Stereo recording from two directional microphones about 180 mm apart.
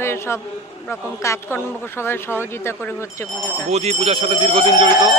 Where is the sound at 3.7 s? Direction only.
35° right (ahead or behind).